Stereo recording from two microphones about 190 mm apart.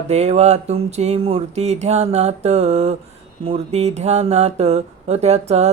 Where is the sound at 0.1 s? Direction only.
35° right (ahead or behind).